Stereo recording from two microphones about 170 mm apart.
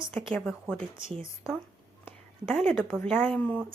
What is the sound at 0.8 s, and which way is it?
Speech, 30° right (ahead or behind).